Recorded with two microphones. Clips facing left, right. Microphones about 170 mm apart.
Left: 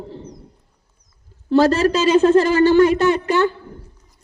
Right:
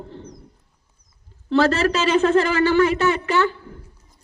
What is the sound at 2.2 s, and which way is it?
Speech, 35° left (ahead or behind).